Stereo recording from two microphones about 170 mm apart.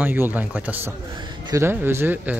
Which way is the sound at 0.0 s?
10° right (ahead or behind).